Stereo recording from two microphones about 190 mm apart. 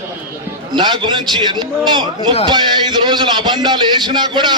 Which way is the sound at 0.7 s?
25° right (ahead or behind).